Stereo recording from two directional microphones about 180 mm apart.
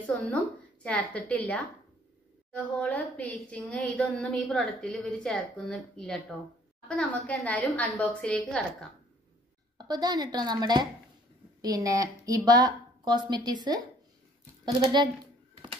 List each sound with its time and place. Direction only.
0.0 s a woman's voice: 10° left (ahead or behind)
9.8 s a woman's voice: 25° right (ahead or behind)